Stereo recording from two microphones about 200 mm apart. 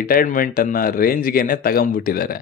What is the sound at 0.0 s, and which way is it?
Speech, 45° left (ahead or behind).